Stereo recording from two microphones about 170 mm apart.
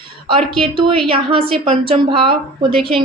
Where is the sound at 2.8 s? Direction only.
Centre (ahead or behind).